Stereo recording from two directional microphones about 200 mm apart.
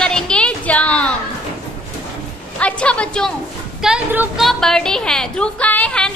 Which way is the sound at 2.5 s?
5° left (ahead or behind).